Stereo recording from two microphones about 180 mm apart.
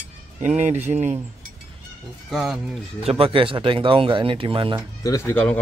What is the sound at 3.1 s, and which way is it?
Speech, 30° right (ahead or behind).